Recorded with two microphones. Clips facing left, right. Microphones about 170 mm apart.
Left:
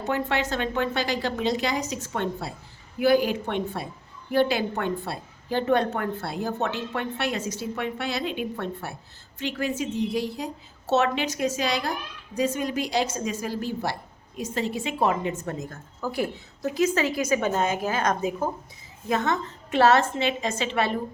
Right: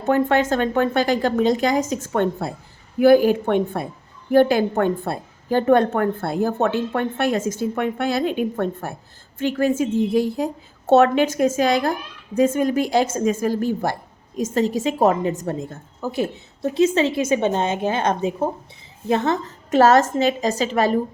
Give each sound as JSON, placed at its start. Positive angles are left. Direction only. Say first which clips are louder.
{"t": 0.0, "sound": "a woman's voice", "louder": "right 8 dB", "side_deg": -50}